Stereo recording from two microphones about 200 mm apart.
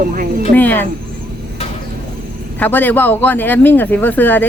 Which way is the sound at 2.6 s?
10° left (ahead or behind).